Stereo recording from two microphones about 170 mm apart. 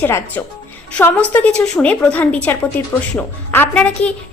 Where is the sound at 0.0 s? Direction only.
10° left (ahead or behind).